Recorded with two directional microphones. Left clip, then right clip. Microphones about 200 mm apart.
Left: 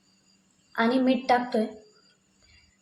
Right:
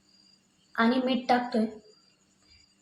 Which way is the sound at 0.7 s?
30° left (ahead or behind).